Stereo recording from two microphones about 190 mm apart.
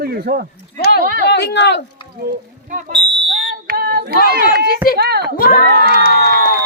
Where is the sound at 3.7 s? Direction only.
50° right (ahead or behind).